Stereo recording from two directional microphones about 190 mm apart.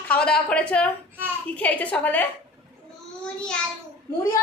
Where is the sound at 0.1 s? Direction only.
5° left (ahead or behind).